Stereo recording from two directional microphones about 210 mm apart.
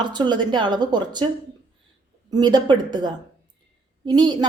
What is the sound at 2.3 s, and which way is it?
Speech, 20° right (ahead or behind).